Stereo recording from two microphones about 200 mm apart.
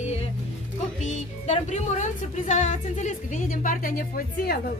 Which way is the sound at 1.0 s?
35° left (ahead or behind).